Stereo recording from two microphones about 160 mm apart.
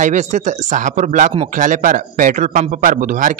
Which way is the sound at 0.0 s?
50° right (ahead or behind).